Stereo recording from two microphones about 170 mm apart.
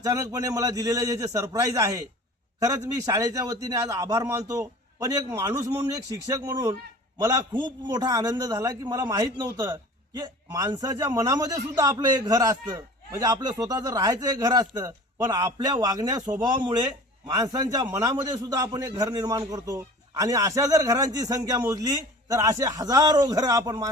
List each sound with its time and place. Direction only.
0.0 s a man's voice: 20° right (ahead or behind)